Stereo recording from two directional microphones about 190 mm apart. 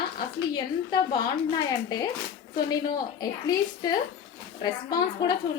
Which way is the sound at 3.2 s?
20° left (ahead or behind).